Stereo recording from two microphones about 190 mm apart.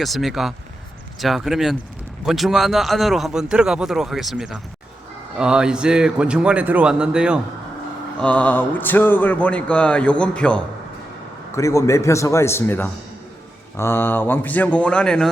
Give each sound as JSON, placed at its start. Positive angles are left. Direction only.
{"t": 0.0, "sound": "a man's voice", "side_deg": 0}
{"t": 8.2, "sound": "speech", "side_deg": 5}
{"t": 11.5, "sound": "speech", "side_deg": 15}